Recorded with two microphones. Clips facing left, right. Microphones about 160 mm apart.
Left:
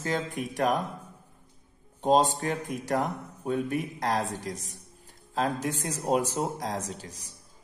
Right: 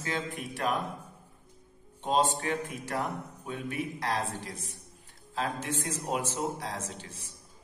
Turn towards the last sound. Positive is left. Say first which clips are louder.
# left 3 dB
turn(degrees=40)  # may be behind; listen again after turning